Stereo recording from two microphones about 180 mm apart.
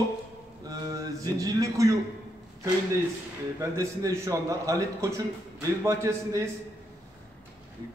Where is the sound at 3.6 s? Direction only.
20° right (ahead or behind).